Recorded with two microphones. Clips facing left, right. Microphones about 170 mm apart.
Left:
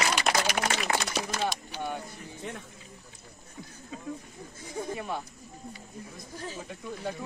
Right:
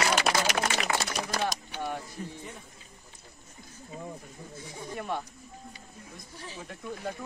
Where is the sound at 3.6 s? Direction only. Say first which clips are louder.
Left 7 dB; 90° left.